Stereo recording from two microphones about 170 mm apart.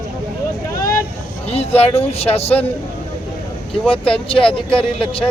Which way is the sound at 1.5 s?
35° left (ahead or behind).